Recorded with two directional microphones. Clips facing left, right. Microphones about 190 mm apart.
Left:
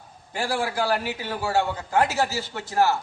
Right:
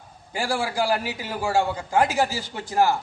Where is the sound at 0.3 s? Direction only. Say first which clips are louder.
Right 1 dB; 10° right (ahead or behind).